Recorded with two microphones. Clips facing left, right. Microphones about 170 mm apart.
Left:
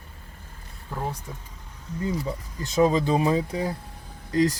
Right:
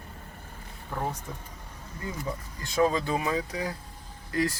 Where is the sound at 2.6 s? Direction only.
20° left (ahead or behind).